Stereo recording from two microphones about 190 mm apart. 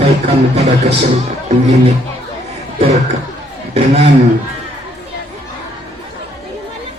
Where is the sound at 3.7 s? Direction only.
35° right (ahead or behind).